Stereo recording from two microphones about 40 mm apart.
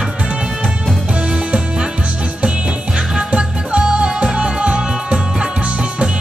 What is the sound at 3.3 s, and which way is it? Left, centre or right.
Music, right.